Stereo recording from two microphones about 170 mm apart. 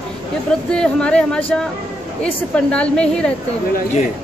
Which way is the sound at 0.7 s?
5° left (ahead or behind).